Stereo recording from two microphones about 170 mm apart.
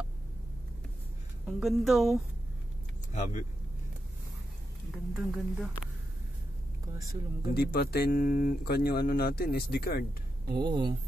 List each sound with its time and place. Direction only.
1.6 s speech: centre (ahead or behind)
3.1 s speech: 45° left (ahead or behind)
4.9 s speech: centre (ahead or behind)
7.5 s speech: 65° left (ahead or behind)
10.5 s speech: 25° right (ahead or behind)